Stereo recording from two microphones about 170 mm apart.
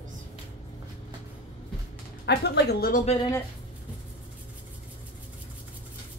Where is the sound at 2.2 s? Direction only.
80° left.